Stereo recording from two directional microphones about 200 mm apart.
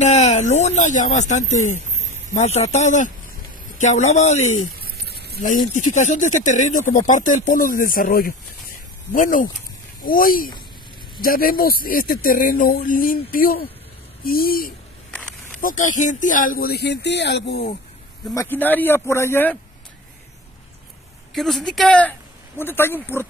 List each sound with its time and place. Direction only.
0.0 s speech: 35° left (ahead or behind)
4.7 s a sound: 50° right (ahead or behind)
5.9 s speech: 35° left (ahead or behind); by 17.6 s 60° left (ahead or behind)
18.3 s a man's voice: 15° left (ahead or behind)
21.3 s a woman's voice: centre (ahead or behind)